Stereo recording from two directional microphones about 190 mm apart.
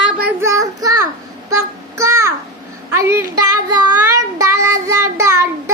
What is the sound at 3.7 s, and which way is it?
Child singing, 20° right (ahead or behind).